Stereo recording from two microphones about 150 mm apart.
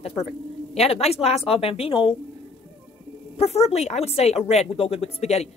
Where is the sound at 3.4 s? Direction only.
45° left (ahead or behind).